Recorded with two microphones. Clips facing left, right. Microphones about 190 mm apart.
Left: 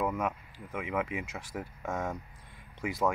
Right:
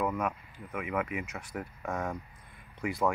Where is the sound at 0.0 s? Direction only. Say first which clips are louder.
Even; 10° left (ahead or behind).